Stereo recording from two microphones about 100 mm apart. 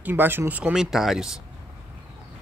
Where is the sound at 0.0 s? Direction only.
20° right (ahead or behind).